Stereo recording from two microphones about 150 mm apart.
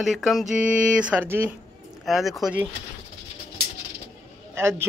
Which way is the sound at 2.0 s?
Centre (ahead or behind).